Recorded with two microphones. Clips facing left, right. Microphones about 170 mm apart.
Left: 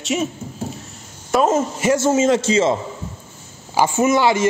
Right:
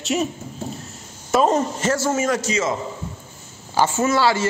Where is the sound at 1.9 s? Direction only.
20° left (ahead or behind).